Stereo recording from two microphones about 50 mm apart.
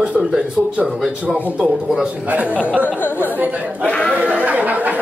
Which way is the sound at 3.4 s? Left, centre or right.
Right.